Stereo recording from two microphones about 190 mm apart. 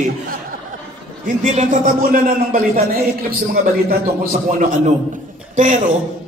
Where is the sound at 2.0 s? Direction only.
50° right (ahead or behind).